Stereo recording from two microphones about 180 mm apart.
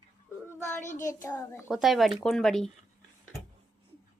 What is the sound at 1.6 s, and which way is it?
A woman's voice, centre (ahead or behind).